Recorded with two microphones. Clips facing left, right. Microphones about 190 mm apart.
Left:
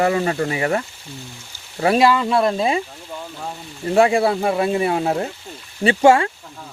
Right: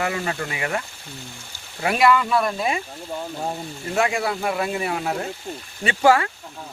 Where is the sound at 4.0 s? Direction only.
30° left (ahead or behind).